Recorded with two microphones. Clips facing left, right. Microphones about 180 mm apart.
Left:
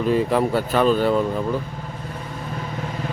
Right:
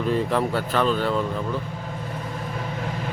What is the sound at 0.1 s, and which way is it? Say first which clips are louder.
Speech: left 4 dB; 10° left (ahead or behind).